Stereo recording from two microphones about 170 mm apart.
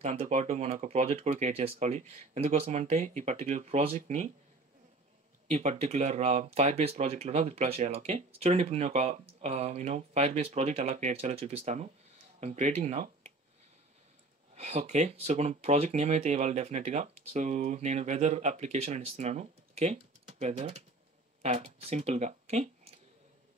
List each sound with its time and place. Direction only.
0.0 s speech: 40° right (ahead or behind)
5.5 s speech: 40° right (ahead or behind)
14.5 s speech: 40° right (ahead or behind)